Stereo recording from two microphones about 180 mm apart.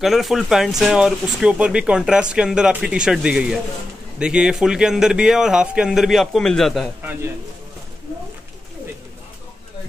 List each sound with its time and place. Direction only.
0.0 s speech: centre (ahead or behind)